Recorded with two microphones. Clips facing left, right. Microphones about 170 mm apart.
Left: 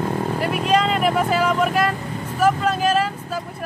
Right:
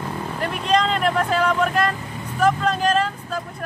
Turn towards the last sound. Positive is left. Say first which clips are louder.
# left 1 dB
turn(degrees=5)  # may be behind; listen again after turning